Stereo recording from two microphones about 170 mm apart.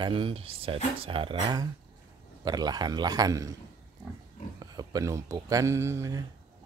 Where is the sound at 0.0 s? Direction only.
30° right (ahead or behind).